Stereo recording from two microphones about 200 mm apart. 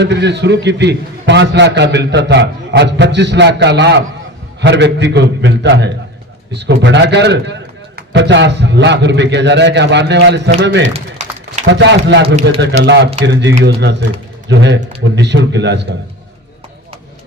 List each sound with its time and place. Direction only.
0.0 s a man's voice: 60° right (ahead or behind)
10.8 s a sound: 35° right (ahead or behind)
11.6 s a man's voice: 60° right (ahead or behind)